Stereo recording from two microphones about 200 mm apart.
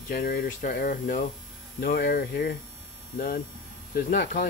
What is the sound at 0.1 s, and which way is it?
Speech, 50° left (ahead or behind).